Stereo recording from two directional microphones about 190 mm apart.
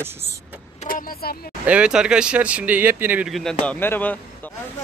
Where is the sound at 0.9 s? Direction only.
55° left (ahead or behind).